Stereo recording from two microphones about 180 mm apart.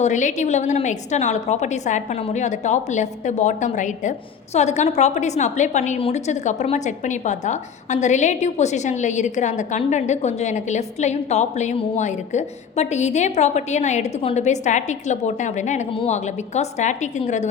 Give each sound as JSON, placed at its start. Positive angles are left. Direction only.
{"t": 0.0, "sound": "a woman's voice", "side_deg": 45}